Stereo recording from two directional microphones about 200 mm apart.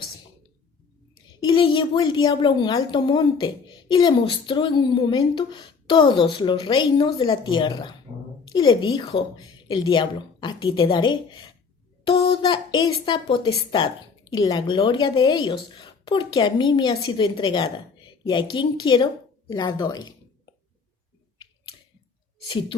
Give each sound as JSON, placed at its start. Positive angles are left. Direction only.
{"t": 1.4, "sound": "a woman's voice", "side_deg": 25}
{"t": 8.9, "sound": "a woman's voice", "side_deg": 25}